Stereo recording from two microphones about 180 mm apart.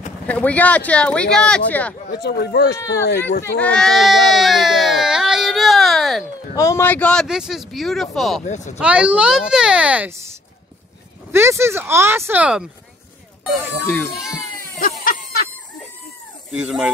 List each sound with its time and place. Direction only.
0.3 s speech: 10° left (ahead or behind)
2.0 s speech: 65° left (ahead or behind)
3.5 s a sound: 5° left (ahead or behind)
6.5 s speech: 15° left (ahead or behind); by 8.4 s centre (ahead or behind)
8.5 s speech: 40° left (ahead or behind)
8.7 s speech: 5° right (ahead or behind)
11.3 s speech: 15° right (ahead or behind)
13.5 s speech: 10° left (ahead or behind)
14.8 s a sound: 55° left (ahead or behind)
16.6 s speech: 5° right (ahead or behind)